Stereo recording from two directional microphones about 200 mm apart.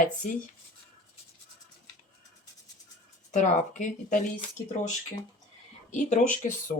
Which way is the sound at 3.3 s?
35° left (ahead or behind).